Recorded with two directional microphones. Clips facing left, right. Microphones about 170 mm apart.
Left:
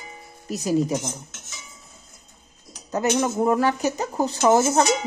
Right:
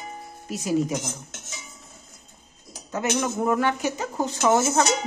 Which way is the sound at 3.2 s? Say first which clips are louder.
Left 2 dB; 30° left (ahead or behind).